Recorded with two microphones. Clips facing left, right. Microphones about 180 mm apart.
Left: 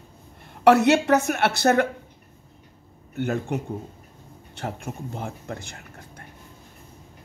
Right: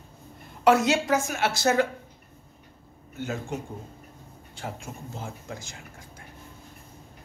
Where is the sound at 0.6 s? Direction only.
65° left (ahead or behind).